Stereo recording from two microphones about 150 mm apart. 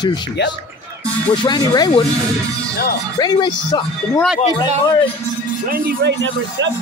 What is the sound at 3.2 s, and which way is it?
Speech, 30° left (ahead or behind).